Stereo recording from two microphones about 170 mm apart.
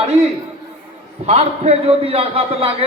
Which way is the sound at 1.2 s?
40° right (ahead or behind).